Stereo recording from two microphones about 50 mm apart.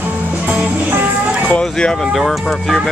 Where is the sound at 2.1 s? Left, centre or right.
Centre.